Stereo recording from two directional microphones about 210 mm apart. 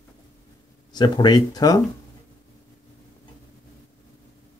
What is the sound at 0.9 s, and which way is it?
Speech, 20° left (ahead or behind).